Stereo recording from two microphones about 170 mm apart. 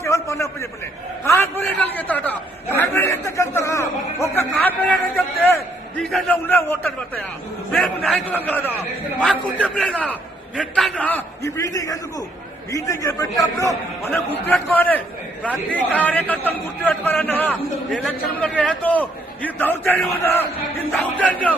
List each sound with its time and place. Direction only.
0.0 s a sound: 15° left (ahead or behind)
1.2 s a man's voice: 15° left (ahead or behind)
2.7 s chatter: 15° left (ahead or behind)
6.0 s a man's voice: centre (ahead or behind)
6.3 s a man's voice: 10° left (ahead or behind)